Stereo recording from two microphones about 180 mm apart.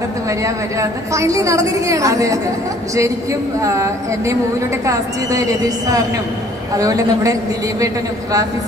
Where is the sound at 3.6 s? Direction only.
15° right (ahead or behind).